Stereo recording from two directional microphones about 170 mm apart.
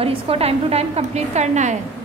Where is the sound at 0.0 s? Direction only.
35° right (ahead or behind).